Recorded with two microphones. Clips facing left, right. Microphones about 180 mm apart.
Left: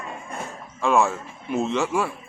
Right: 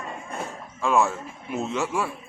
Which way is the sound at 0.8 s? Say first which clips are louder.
Left 2 dB; centre (ahead or behind).